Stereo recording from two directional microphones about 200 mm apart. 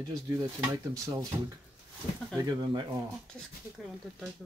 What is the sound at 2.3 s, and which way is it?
Speech, 20° right (ahead or behind).